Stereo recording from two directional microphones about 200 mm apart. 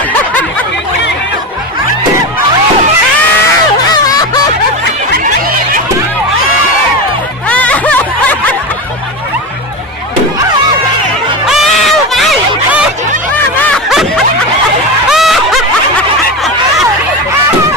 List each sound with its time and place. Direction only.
3.9 s snicker: 20° left (ahead or behind)
7.4 s music: 5° left (ahead or behind)
11.4 s music: centre (ahead or behind)
13.7 s snicker: centre (ahead or behind)
15.1 s a sound: centre (ahead or behind)